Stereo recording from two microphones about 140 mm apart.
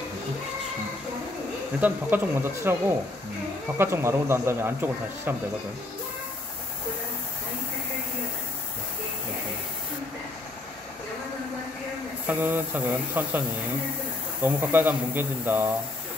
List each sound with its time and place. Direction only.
1.8 s a man's voice: 15° right (ahead or behind)
3.7 s a man's voice: 20° right (ahead or behind)
12.3 s a man's voice: 15° right (ahead or behind)
14.4 s a man's voice: 15° right (ahead or behind)